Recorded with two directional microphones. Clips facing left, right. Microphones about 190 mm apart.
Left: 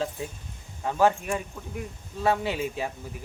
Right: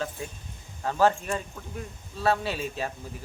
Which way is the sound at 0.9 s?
15° left (ahead or behind).